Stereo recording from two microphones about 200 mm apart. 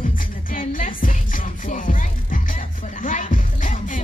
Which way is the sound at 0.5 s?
45° left (ahead or behind).